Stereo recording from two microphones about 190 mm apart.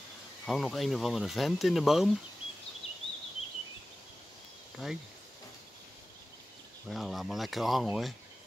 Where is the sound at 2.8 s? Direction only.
30° left (ahead or behind).